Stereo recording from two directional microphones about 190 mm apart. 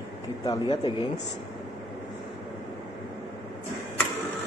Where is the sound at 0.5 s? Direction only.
25° left (ahead or behind).